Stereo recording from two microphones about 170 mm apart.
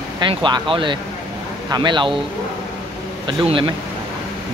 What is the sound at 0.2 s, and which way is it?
Speech, 30° right (ahead or behind).